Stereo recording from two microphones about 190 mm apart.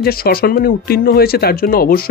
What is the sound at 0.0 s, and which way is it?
Speech, 50° left (ahead or behind).